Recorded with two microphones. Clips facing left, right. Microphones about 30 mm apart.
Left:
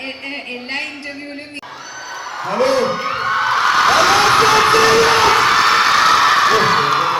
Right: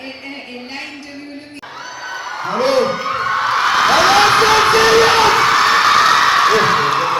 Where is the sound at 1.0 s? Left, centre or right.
Left.